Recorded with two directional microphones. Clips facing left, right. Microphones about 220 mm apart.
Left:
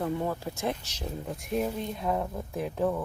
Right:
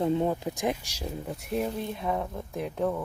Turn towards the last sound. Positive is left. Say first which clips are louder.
# even
turn(degrees=0)  # may be behind; listen again after turning